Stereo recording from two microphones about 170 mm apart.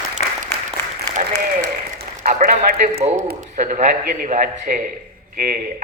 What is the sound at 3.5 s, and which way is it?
A man's voice, 45° right (ahead or behind).